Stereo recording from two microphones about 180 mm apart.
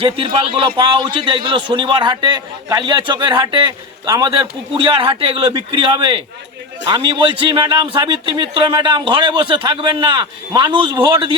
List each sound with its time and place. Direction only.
0.0 s a man's voice: 30° right (ahead or behind)